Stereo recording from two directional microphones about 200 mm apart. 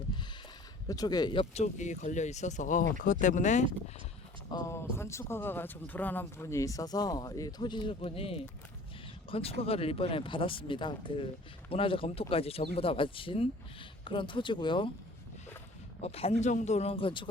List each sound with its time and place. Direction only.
0.9 s speech: 20° left (ahead or behind); by 3.7 s 35° left (ahead or behind)
4.5 s speech: 15° left (ahead or behind)
16.0 s speech: 30° left (ahead or behind)